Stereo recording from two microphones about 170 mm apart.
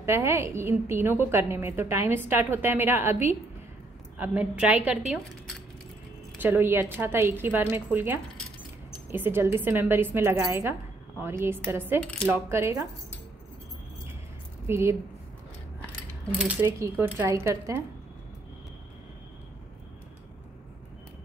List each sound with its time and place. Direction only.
0.0 s a woman's voice: 15° right (ahead or behind)
14.7 s a woman's voice: 15° right (ahead or behind)
16.3 s a woman's voice: 10° right (ahead or behind)